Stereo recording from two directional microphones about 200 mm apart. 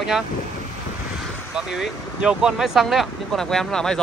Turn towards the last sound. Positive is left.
turn(degrees=5)  # may be behind; listen again after turning